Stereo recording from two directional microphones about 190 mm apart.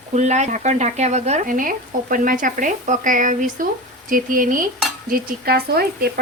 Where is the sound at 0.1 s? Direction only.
35° right (ahead or behind).